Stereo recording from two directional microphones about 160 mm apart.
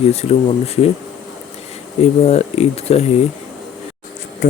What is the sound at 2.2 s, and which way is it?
Speech, 40° left (ahead or behind).